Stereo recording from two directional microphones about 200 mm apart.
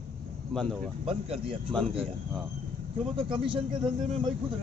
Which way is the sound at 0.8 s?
30° right (ahead or behind).